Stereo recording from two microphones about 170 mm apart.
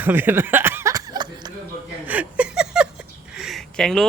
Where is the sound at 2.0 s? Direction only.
10° right (ahead or behind).